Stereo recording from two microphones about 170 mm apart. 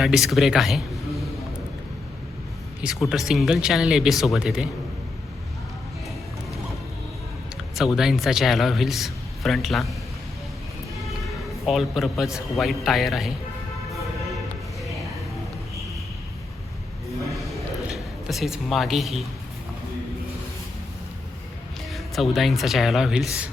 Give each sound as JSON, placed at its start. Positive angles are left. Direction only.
{"t": 0.0, "sound": "speech", "side_deg": 0}
{"t": 2.8, "sound": "speech", "side_deg": 0}
{"t": 7.5, "sound": "speech", "side_deg": 0}
{"t": 11.6, "sound": "speech", "side_deg": 0}
{"t": 17.8, "sound": "speech", "side_deg": 0}
{"t": 21.9, "sound": "speech", "side_deg": 0}